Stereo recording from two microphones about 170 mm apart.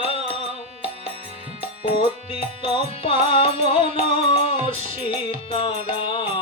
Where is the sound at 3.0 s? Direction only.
30° left (ahead or behind).